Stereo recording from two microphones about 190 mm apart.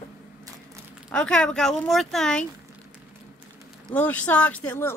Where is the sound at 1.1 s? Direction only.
5° left (ahead or behind).